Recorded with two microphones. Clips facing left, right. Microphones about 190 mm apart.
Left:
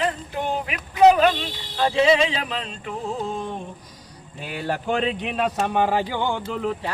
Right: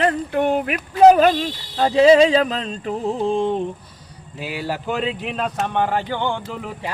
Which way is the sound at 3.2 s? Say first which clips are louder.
Right 9 dB; 30° right (ahead or behind).